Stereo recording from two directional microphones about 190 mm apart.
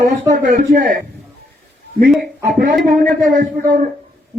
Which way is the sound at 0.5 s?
45° right (ahead or behind).